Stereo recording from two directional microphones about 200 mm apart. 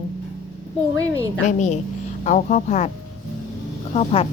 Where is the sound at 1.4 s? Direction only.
35° left (ahead or behind).